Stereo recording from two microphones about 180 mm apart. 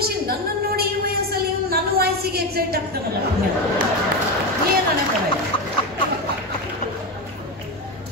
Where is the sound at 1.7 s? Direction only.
60° right (ahead or behind).